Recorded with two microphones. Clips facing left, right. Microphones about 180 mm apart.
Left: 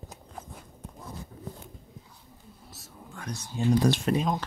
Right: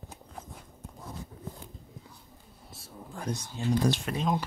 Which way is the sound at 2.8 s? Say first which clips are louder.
Right 4 dB; 35° right (ahead or behind).